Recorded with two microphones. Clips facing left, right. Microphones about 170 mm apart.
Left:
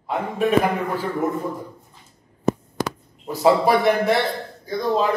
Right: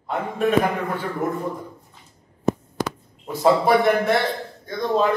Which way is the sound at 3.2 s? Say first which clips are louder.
Left 1 dB; centre (ahead or behind).